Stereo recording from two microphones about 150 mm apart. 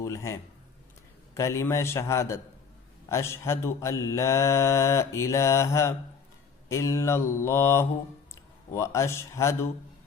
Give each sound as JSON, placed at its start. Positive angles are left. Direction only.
{"t": 0.0, "sound": "mantra", "side_deg": 20}
{"t": 1.4, "sound": "mantra", "side_deg": 20}